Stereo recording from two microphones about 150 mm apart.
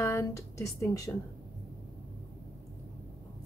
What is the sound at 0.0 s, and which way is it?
Speech, 20° left (ahead or behind).